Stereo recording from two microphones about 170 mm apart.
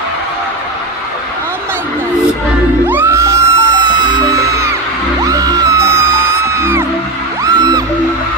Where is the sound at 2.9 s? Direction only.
15° right (ahead or behind).